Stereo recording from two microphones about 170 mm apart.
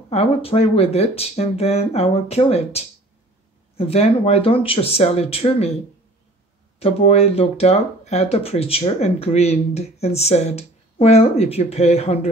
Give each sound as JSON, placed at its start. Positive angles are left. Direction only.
{"t": 0.1, "sound": "speech", "side_deg": 35}
{"t": 6.8, "sound": "speech", "side_deg": 35}